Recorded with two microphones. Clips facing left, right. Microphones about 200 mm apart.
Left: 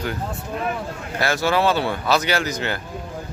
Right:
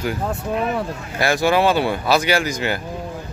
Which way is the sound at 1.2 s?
15° right (ahead or behind).